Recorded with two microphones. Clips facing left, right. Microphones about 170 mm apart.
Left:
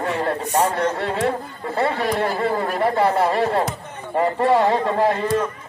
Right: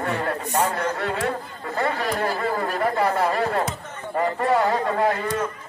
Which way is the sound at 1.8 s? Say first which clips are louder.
Left 3 dB; 30° left (ahead or behind).